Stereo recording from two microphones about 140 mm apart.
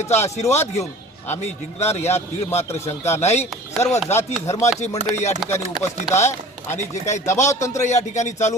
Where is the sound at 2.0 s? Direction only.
20° left (ahead or behind).